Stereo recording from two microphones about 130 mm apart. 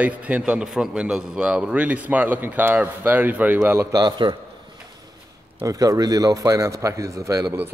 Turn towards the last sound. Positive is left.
turn(degrees=-25)  # may be behind; listen again after turning